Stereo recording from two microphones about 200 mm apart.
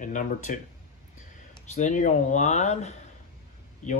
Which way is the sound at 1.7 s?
35° left (ahead or behind).